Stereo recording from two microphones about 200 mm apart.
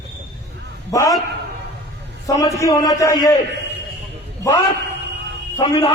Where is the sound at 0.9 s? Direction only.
15° left (ahead or behind).